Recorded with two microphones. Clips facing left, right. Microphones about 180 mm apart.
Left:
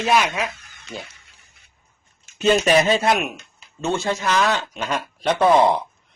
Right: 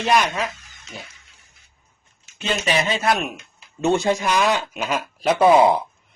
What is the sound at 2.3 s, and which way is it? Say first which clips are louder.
Speech: left 6 dB; 40° left (ahead or behind).